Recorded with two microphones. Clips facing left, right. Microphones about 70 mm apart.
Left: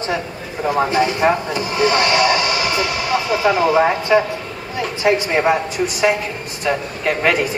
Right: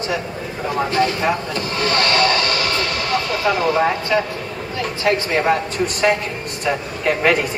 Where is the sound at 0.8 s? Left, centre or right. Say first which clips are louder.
Left 1 dB; centre.